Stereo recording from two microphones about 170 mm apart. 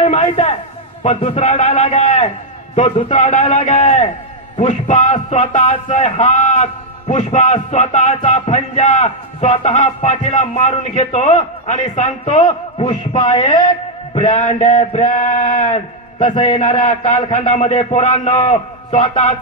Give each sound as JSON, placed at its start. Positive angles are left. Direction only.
{"t": 0.0, "sound": "a man's voice", "side_deg": 40}